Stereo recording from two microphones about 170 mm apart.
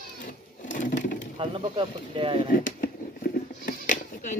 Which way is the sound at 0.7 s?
50° left (ahead or behind).